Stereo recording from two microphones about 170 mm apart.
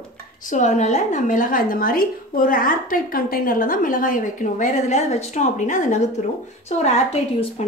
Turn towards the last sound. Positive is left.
turn(degrees=40)  # may be behind; listen again after turning